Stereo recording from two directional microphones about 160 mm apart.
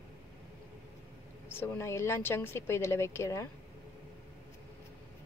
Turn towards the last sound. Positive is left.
turn(degrees=15)  # may be behind; listen again after turning